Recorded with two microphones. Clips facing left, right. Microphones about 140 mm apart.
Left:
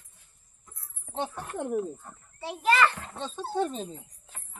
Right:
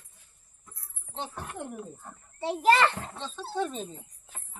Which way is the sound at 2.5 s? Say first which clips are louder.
Right 2 dB; 30° right (ahead or behind).